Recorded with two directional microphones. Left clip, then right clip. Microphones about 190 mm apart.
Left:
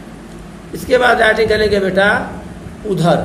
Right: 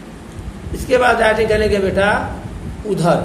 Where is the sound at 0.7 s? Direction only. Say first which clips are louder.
Left 2 dB; 40° right (ahead or behind).